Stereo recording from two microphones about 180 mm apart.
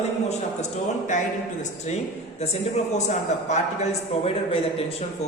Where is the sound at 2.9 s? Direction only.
40° left (ahead or behind).